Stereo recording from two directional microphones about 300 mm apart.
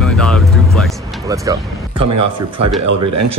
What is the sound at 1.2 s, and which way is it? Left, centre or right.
Speech, centre.